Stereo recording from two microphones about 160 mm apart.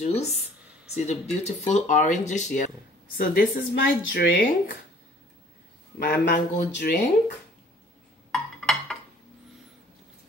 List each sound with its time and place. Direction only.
0.0 s speech: 40° left (ahead or behind)
3.2 s speech: 70° left (ahead or behind)
5.9 s speech: 70° left (ahead or behind)
8.3 s a sound: 5° left (ahead or behind)